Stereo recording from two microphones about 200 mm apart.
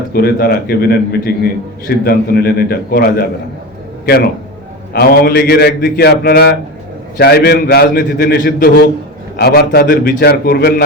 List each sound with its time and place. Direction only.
0.1 s a man's voice: 50° left (ahead or behind)